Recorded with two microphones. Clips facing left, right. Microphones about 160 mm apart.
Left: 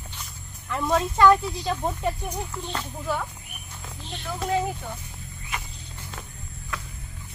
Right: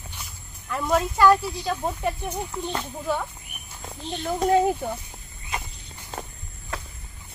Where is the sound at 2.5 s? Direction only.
20° right (ahead or behind).